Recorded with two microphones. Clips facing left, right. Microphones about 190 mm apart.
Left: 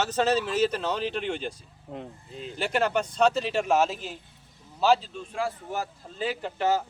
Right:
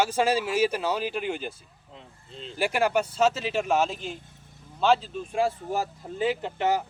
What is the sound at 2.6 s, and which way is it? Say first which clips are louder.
Speech: right 2 dB; 10° right (ahead or behind).